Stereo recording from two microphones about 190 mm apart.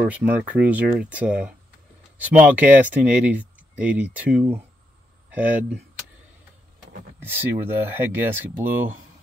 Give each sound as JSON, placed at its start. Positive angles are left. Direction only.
{"t": 0.0, "sound": "speech", "side_deg": -10}
{"t": 7.2, "sound": "speech", "side_deg": -10}